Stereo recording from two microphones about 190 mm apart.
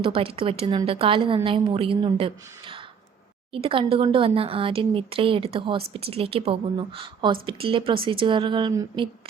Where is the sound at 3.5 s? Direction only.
30° right (ahead or behind).